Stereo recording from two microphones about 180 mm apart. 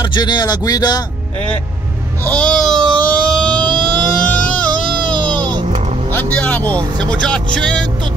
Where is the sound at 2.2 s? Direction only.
5° left (ahead or behind).